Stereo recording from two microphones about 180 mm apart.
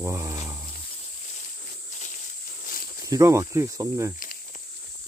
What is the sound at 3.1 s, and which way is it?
Speech, 15° right (ahead or behind).